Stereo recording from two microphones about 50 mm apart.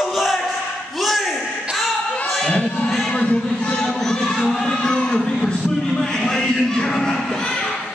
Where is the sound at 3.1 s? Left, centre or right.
Left.